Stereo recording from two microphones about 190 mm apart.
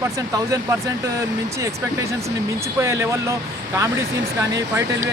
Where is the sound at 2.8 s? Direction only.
15° right (ahead or behind).